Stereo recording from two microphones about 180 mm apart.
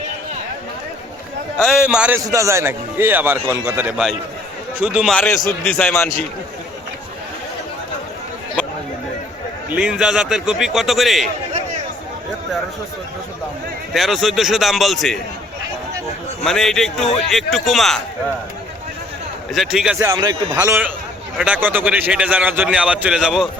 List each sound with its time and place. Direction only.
1.6 s a man's voice: 5° right (ahead or behind)
5.5 s a man's voice: 5° left (ahead or behind)
9.6 s a man's voice: 5° right (ahead or behind)
13.9 s a man's voice: centre (ahead or behind)
16.4 s a man's voice: centre (ahead or behind)
19.5 s a man's voice: 5° right (ahead or behind)
20.0 s a man's voice: 20° right (ahead or behind); by 23.5 s 5° right (ahead or behind)